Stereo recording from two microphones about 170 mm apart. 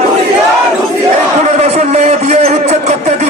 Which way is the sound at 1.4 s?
40° right (ahead or behind).